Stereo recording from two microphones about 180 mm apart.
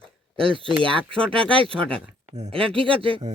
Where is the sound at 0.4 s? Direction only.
30° right (ahead or behind).